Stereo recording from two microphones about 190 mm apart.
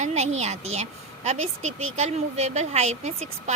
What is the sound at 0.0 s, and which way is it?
A woman's voice, 35° right (ahead or behind).